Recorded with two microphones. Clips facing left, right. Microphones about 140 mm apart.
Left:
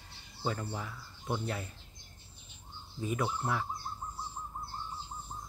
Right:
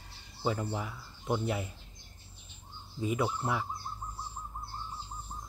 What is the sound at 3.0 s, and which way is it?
Speech, 10° right (ahead or behind).